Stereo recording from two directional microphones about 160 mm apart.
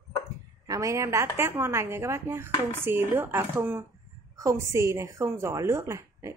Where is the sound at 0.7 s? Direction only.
20° right (ahead or behind).